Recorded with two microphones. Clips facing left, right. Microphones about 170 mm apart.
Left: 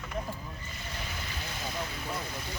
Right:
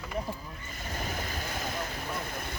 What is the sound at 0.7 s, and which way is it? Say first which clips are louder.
Vehicle: right 7 dB; 45° right (ahead or behind).